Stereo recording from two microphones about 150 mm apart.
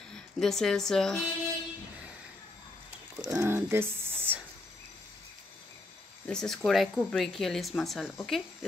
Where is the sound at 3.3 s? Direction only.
20° right (ahead or behind).